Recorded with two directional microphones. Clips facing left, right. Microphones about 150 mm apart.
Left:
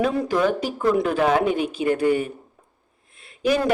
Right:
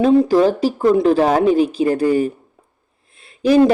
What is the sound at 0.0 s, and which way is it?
A man's voice, 30° right (ahead or behind).